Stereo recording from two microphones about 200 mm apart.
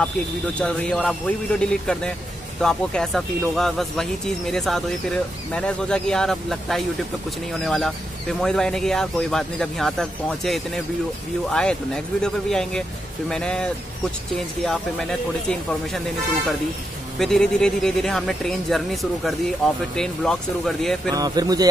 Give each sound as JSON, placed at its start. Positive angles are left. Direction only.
{"t": 0.6, "sound": "speech", "side_deg": 5}
{"t": 17.2, "sound": "speech", "side_deg": 0}
{"t": 21.1, "sound": "speech", "side_deg": -20}